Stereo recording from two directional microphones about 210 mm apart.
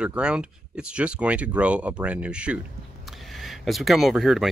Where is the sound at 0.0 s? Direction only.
5° right (ahead or behind).